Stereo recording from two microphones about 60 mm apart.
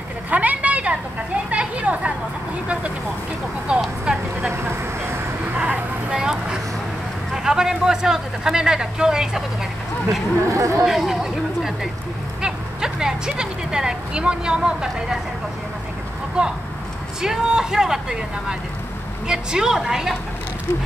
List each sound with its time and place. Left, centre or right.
0.3 s vehicle: right
1.5 s a sound: right
3.7 s vehicle: centre
4.5 s vehicle: right
5.6 s vehicle: centre
7.4 s speech: centre
10.6 s speech: right
10.9 s speech: centre
17.2 s speech: centre